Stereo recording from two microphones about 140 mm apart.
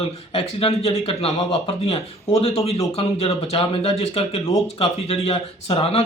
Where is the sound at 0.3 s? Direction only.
45° left (ahead or behind).